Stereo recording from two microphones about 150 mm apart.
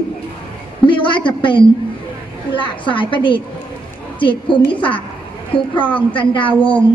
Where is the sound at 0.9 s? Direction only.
35° left (ahead or behind).